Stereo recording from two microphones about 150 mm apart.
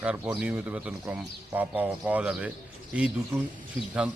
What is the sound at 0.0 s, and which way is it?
Speech, 10° right (ahead or behind).